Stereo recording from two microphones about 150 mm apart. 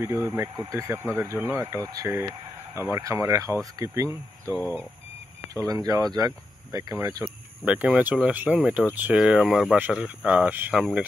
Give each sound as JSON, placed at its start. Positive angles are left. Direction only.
{"t": 0.0, "sound": "speech", "side_deg": -20}